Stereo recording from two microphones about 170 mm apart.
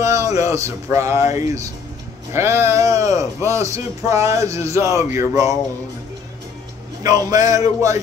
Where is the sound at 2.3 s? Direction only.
15° right (ahead or behind).